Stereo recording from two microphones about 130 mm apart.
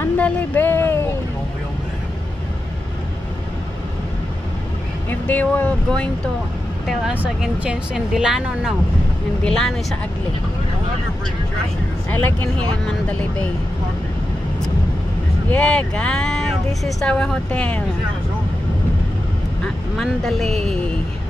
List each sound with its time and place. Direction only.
0.0 s a sound: 15° left (ahead or behind)
5.1 s speech: 10° left (ahead or behind)
12.1 s speech: 15° left (ahead or behind)
15.5 s speech: 10° left (ahead or behind)
19.6 s speech: centre (ahead or behind)